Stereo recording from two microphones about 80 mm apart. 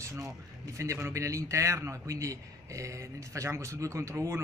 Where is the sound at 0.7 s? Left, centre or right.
Right.